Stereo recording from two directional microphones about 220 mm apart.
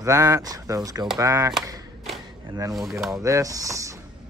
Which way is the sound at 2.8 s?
Centre (ahead or behind).